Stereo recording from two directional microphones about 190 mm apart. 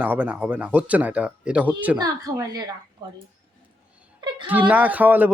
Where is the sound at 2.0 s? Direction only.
20° right (ahead or behind).